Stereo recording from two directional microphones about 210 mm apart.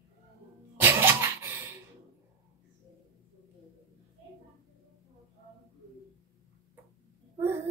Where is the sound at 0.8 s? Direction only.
10° right (ahead or behind).